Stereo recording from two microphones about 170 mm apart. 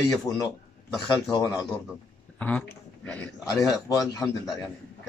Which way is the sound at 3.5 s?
20° left (ahead or behind).